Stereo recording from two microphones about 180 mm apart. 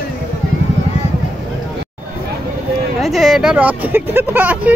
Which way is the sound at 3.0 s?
Centre (ahead or behind).